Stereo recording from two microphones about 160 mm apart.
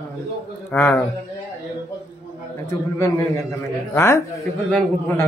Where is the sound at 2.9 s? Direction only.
20° left (ahead or behind).